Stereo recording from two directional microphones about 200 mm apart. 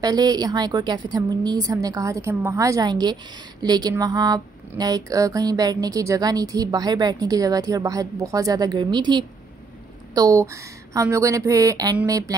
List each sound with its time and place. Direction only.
0.0 s a woman's voice: 20° right (ahead or behind)